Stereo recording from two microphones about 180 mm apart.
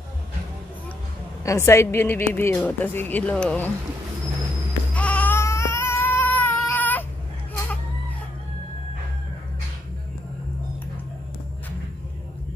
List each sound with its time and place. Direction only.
1.4 s a woman's voice: 15° left (ahead or behind)
4.9 s baby cry: 5° left (ahead or behind)